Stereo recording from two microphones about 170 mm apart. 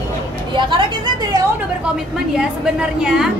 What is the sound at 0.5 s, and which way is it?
Speech, 30° right (ahead or behind).